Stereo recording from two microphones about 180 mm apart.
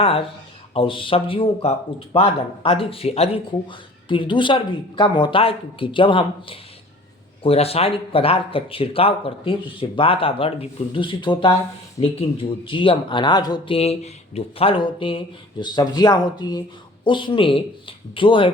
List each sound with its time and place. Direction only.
0.0 s speech: 35° left (ahead or behind)